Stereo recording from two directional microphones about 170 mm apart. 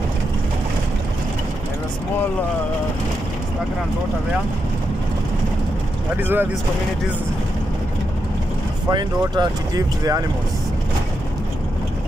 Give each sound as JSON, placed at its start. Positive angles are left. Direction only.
{"t": 6.1, "sound": "speech", "side_deg": -10}
{"t": 8.9, "sound": "speech", "side_deg": -25}